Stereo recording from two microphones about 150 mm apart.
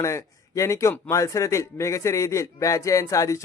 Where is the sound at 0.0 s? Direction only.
20° left (ahead or behind).